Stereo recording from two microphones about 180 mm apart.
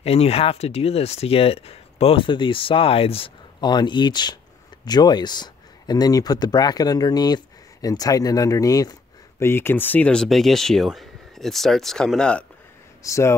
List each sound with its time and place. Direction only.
0.0 s speech: 35° left (ahead or behind); by 12.4 s 5° left (ahead or behind)
13.0 s speech: 15° left (ahead or behind)